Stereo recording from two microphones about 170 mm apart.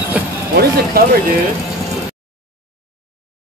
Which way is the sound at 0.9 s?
65° right (ahead or behind).